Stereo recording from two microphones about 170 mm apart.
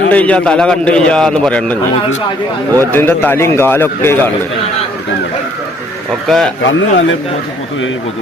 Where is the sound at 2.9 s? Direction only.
10° left (ahead or behind).